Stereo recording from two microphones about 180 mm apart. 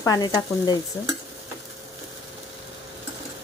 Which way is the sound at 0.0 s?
20° left (ahead or behind).